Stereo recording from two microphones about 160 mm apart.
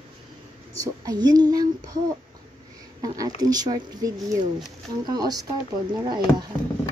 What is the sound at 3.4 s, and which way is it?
Speech, 25° right (ahead or behind).